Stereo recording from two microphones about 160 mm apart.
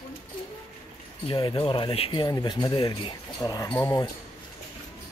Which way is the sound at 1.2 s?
30° left (ahead or behind).